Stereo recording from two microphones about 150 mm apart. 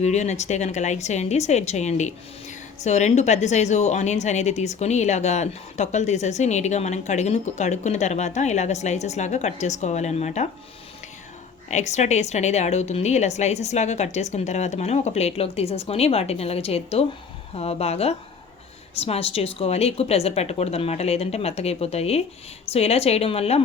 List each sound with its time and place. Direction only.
0.0 s a woman's voice: 50° left (ahead or behind)
11.7 s a woman's voice: 50° left (ahead or behind)